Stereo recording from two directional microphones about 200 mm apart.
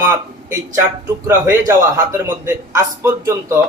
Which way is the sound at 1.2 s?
15° right (ahead or behind).